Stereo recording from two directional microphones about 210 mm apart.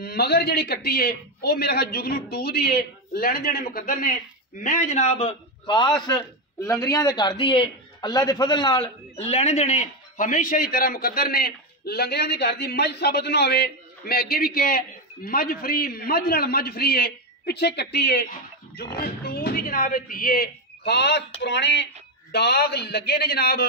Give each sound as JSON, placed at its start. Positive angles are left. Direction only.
{"t": 0.0, "sound": "a man's voice", "side_deg": 50}
{"t": 9.1, "sound": "a man's voice", "side_deg": 30}